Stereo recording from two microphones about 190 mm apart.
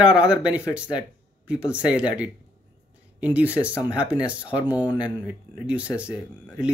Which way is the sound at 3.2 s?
10° right (ahead or behind).